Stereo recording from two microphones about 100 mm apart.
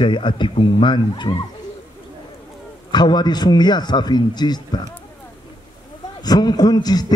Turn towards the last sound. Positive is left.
turn(degrees=40)  # may be behind; listen again after turning